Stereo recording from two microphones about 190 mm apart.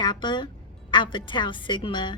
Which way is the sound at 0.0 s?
25° left (ahead or behind).